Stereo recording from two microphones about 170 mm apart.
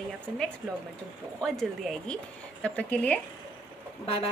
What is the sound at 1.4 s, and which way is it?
A woman's voice, 5° left (ahead or behind).